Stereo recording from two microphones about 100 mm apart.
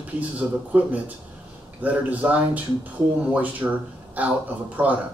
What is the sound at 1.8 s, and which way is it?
Speech, 15° right (ahead or behind).